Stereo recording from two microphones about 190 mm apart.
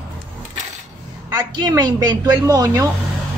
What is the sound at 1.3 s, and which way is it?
A woman's voice, 25° right (ahead or behind).